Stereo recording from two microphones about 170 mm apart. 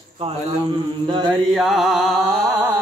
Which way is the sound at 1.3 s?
Centre (ahead or behind).